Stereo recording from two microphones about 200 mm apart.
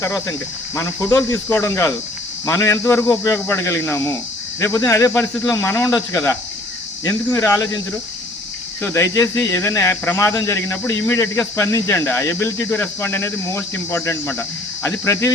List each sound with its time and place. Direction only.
0.0 s speech: 15° left (ahead or behind)
7.0 s speech: 20° left (ahead or behind)
8.8 s speech: 15° left (ahead or behind)